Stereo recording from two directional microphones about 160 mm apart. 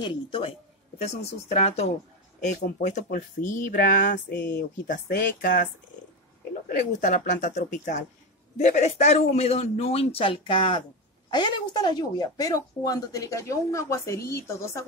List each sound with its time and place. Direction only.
0.0 s a man's voice: 30° left (ahead or behind)
1.0 s speech: 45° left (ahead or behind)
4.8 s speech: 70° left (ahead or behind)
6.7 s a man's voice: 50° left (ahead or behind); by 14.9 s 20° left (ahead or behind)